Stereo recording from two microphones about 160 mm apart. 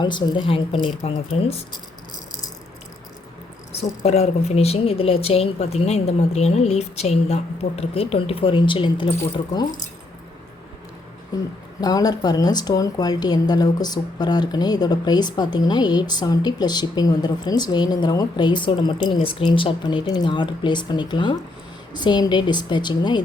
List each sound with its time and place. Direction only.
0.0 s speech: 30° left (ahead or behind)
4.0 s speech: 40° left (ahead or behind)
11.3 s a woman's voice: 25° left (ahead or behind)